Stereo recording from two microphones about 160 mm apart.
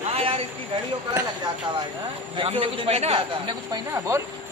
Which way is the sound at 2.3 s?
30° right (ahead or behind).